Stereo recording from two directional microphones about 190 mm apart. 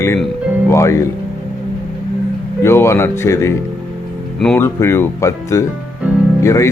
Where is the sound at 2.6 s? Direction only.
15° left (ahead or behind).